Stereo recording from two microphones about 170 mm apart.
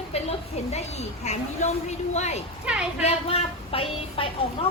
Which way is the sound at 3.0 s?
35° left (ahead or behind).